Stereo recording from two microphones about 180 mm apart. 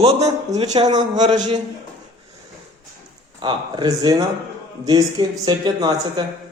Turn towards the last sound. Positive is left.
turn(degrees=-20)  # may be behind; listen again after turning